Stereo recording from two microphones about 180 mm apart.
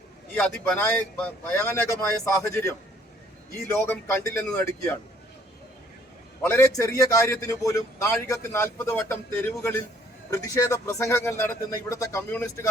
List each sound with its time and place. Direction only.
0.3 s a man's voice: 10° left (ahead or behind)
3.8 s a man's voice: 10° left (ahead or behind)
6.4 s a man's voice: 15° left (ahead or behind)